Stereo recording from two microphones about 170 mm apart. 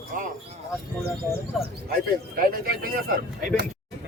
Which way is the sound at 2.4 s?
60° right (ahead or behind).